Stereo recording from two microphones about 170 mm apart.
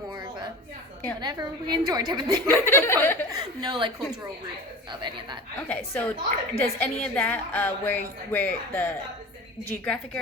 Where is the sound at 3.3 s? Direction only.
25° right (ahead or behind).